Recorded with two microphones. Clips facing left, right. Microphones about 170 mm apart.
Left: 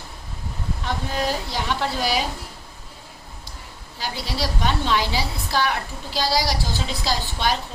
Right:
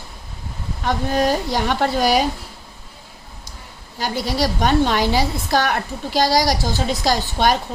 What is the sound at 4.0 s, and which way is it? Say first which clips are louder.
A woman's voice: right 7 dB; 45° right (ahead or behind).